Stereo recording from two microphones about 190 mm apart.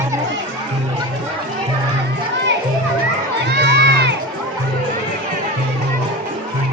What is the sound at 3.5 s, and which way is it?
Crowd, 60° right (ahead or behind).